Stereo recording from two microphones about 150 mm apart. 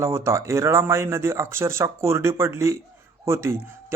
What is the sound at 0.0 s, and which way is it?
Speech, 20° right (ahead or behind).